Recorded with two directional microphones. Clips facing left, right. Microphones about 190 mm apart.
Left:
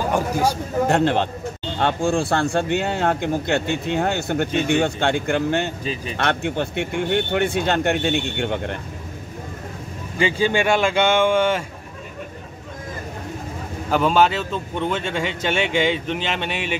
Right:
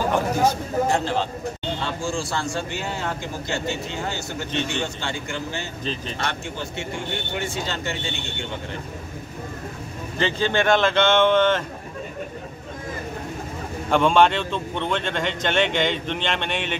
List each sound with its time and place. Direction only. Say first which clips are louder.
0.8 s speech: left 8 dB; 60° left (ahead or behind)
10.1 s a man's voice: left 3 dB; 10° left (ahead or behind)
13.8 s a man's voice: even; 5° left (ahead or behind)